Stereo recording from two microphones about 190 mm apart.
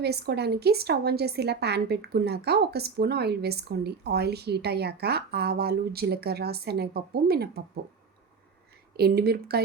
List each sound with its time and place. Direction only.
0.0 s a woman's voice: 60° right (ahead or behind)
9.0 s a woman's voice: 55° right (ahead or behind)